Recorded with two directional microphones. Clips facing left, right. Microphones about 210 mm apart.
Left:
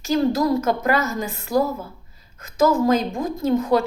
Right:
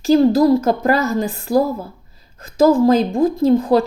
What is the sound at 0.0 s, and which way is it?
Speech, 30° right (ahead or behind).